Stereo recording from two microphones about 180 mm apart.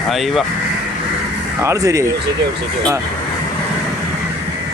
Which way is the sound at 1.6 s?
15° right (ahead or behind).